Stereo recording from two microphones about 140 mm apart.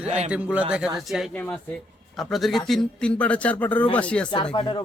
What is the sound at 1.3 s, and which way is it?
A man's voice, 10° left (ahead or behind).